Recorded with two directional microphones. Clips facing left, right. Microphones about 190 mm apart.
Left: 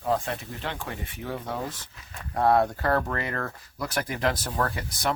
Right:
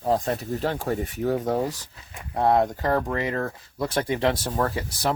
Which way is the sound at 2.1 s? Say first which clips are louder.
Right 1 dB; 20° right (ahead or behind).